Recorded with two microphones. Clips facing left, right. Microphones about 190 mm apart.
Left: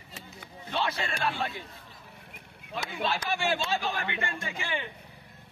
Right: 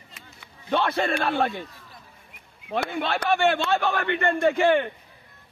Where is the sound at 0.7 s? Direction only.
55° right (ahead or behind).